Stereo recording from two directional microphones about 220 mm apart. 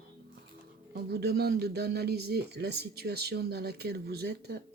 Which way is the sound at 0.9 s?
45° right (ahead or behind).